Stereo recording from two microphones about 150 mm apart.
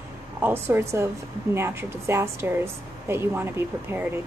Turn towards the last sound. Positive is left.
turn(degrees=-15)  # may be behind; listen again after turning